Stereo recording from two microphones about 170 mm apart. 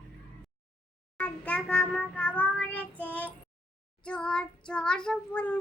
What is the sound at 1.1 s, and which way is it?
Child singing, 10° left (ahead or behind).